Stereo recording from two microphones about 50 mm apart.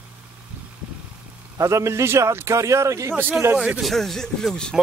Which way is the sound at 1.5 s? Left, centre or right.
Right.